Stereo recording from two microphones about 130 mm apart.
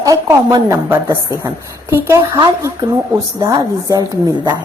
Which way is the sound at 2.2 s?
30° right (ahead or behind).